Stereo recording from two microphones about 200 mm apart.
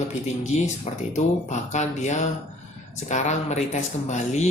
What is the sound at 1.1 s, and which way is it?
Speech, 35° left (ahead or behind).